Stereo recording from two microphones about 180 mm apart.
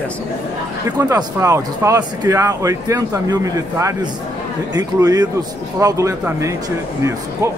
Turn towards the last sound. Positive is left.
turn(degrees=-15)  # may be behind; listen again after turning